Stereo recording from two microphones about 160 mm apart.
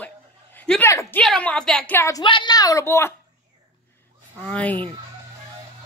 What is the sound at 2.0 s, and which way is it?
Speech, 20° left (ahead or behind).